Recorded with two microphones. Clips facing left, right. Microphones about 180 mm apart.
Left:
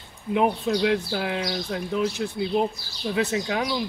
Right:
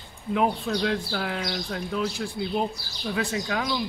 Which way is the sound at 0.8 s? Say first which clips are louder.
Left 3 dB; 20° left (ahead or behind).